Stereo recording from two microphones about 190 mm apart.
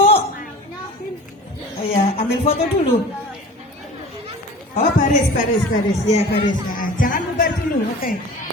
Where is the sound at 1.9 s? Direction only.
30° left (ahead or behind).